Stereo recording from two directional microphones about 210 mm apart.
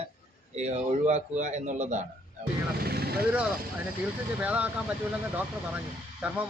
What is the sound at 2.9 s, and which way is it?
Vehicle, 50° right (ahead or behind).